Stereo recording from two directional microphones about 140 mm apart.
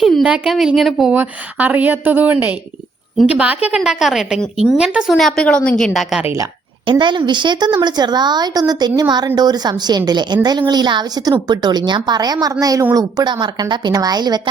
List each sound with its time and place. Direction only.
0.0 s a woman's voice: 5° right (ahead or behind)
1.1 s a woman's voice: 15° right (ahead or behind)
6.2 s a woman's voice: 20° right (ahead or behind)
7.0 s a woman's voice: 35° right (ahead or behind)